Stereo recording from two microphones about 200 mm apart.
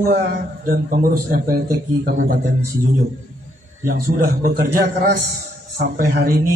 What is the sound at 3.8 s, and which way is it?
A man's voice, 50° right (ahead or behind).